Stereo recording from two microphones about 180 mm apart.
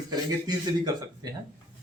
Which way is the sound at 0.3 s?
20° right (ahead or behind).